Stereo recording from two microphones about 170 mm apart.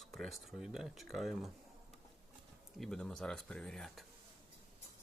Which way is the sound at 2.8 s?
5° left (ahead or behind).